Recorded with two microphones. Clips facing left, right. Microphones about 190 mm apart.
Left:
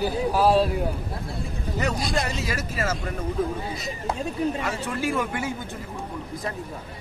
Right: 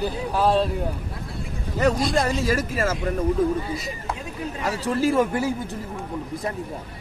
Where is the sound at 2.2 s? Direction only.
45° right (ahead or behind).